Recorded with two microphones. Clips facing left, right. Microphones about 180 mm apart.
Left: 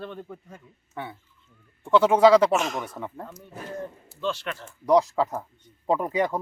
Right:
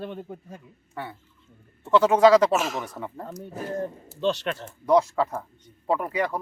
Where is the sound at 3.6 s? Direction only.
35° right (ahead or behind).